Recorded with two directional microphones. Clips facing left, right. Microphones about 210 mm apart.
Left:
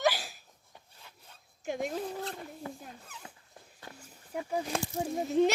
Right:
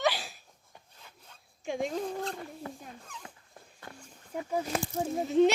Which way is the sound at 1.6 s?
5° left (ahead or behind).